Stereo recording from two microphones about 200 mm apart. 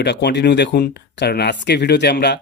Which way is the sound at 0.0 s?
60° left (ahead or behind).